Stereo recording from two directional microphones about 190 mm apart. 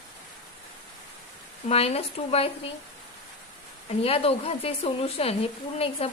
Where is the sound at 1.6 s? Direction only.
30° left (ahead or behind).